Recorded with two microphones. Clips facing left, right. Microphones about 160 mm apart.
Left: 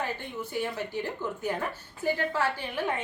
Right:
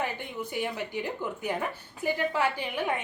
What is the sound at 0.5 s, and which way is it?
A woman's voice, 15° right (ahead or behind).